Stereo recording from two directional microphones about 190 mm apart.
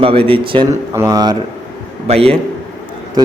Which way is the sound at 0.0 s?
30° right (ahead or behind).